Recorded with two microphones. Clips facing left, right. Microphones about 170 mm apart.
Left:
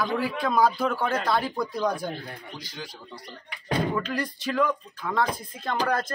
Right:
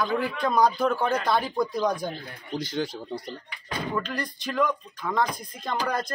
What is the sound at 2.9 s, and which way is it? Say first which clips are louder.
Speech: right 9 dB; 25° right (ahead or behind).